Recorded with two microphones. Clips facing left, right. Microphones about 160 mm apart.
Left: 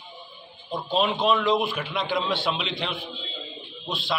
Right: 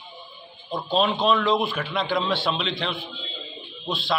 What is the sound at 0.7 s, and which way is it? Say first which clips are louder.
A man's voice: right 2 dB; 10° left (ahead or behind).